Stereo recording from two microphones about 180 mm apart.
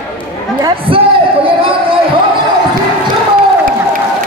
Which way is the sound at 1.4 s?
30° right (ahead or behind).